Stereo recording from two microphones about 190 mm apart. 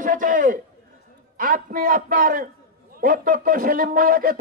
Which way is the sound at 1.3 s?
45° right (ahead or behind).